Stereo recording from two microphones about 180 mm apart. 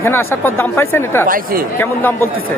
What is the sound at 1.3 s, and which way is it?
Speech, 55° right (ahead or behind).